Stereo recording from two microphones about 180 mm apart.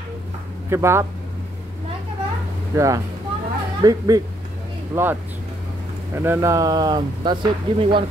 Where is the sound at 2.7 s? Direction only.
15° right (ahead or behind).